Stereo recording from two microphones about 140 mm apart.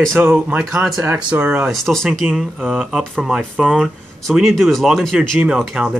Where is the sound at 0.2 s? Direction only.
15° right (ahead or behind).